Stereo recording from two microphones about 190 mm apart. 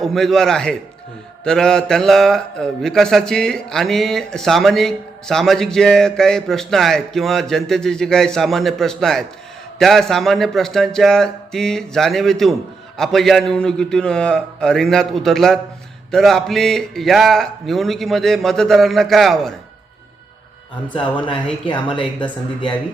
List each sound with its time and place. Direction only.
0.0 s a man's voice: centre (ahead or behind)
20.9 s speech: 25° left (ahead or behind)